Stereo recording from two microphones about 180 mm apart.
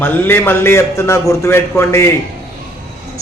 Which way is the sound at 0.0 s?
10° left (ahead or behind).